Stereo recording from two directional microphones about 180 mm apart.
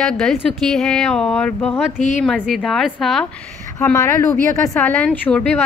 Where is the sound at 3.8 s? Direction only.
15° left (ahead or behind).